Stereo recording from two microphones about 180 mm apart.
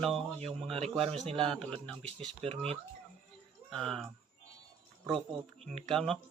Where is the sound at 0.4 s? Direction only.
35° right (ahead or behind).